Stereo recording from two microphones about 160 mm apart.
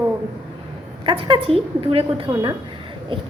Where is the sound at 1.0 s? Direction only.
30° right (ahead or behind).